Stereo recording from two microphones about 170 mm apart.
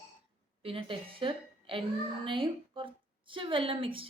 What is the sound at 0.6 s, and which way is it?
A woman's voice, 30° right (ahead or behind).